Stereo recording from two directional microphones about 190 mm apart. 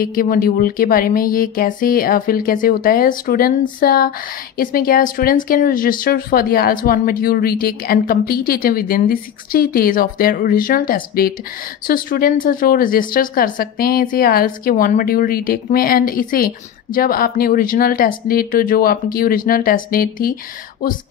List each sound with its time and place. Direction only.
0.0 s a woman's voice: 50° left (ahead or behind)